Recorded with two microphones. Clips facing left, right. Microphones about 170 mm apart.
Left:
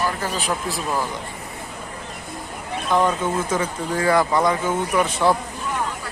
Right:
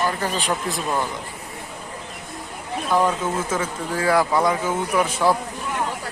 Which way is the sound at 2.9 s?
5° right (ahead or behind).